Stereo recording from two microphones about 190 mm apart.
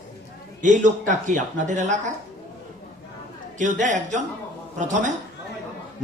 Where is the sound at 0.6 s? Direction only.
40° right (ahead or behind).